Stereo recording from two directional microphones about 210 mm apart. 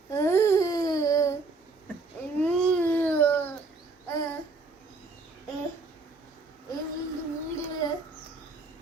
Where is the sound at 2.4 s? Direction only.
5° left (ahead or behind).